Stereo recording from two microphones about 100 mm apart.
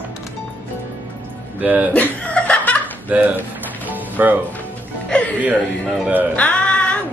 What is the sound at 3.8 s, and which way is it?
Music, 15° right (ahead or behind).